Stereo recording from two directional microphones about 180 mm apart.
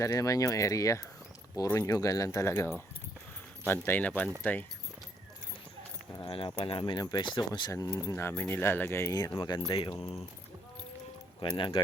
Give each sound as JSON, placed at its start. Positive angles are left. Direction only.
{"t": 0.0, "sound": "speech", "side_deg": 20}
{"t": 3.7, "sound": "speech", "side_deg": 10}
{"t": 6.3, "sound": "speech", "side_deg": 30}
{"t": 11.3, "sound": "speech", "side_deg": 25}